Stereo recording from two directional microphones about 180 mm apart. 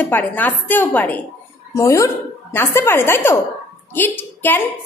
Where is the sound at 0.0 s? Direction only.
10° left (ahead or behind).